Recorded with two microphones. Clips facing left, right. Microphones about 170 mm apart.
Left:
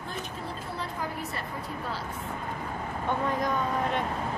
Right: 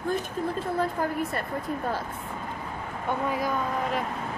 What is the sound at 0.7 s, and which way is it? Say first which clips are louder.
Speech: right 7 dB; 50° right (ahead or behind).